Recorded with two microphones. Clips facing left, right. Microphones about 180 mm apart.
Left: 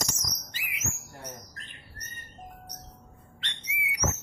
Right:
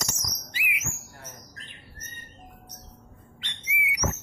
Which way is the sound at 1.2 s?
20° left (ahead or behind).